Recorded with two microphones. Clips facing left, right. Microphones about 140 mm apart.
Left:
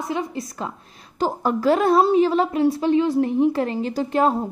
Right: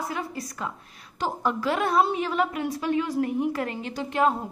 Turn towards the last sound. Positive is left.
turn(degrees=35)  # may be behind; listen again after turning